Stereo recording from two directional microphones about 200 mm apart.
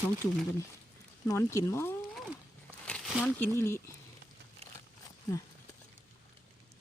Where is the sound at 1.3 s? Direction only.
15° left (ahead or behind).